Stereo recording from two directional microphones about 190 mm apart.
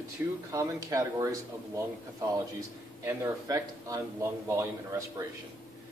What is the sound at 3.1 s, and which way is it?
Speech, 15° right (ahead or behind).